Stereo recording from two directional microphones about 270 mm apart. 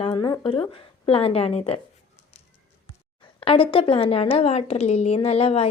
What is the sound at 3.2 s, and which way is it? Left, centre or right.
A woman's voice, centre.